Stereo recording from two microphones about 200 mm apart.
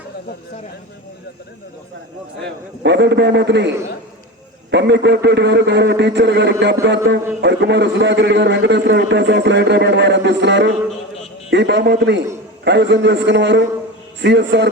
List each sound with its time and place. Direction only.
2.4 s a man's voice: 60° right (ahead or behind)
4.7 s a man's voice: 60° right (ahead or behind)